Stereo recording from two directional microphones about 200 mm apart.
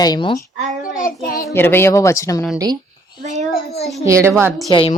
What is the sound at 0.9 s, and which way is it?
Speech, 45° left (ahead or behind).